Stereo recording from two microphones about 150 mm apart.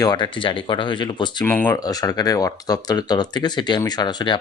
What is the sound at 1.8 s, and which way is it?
Speech, 25° left (ahead or behind).